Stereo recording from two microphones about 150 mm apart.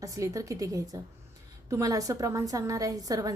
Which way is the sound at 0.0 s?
20° right (ahead or behind).